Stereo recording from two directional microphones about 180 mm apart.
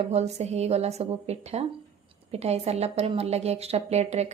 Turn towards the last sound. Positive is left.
turn(degrees=-35)  # may be behind; listen again after turning